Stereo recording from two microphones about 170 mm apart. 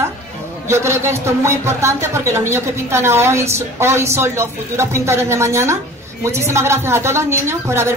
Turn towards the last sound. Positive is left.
turn(degrees=-15)  # may be behind; listen again after turning